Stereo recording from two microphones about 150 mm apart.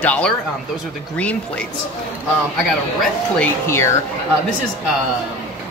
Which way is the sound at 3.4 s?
15° left (ahead or behind).